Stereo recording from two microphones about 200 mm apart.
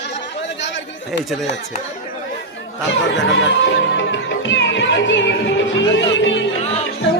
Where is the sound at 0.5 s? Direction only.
65° left (ahead or behind).